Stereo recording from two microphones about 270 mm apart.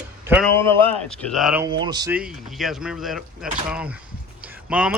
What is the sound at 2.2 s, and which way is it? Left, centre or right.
Speech, centre.